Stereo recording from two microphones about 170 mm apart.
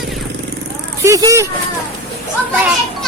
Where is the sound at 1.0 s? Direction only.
20° right (ahead or behind).